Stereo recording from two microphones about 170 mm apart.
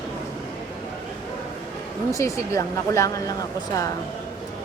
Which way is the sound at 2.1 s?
15° left (ahead or behind).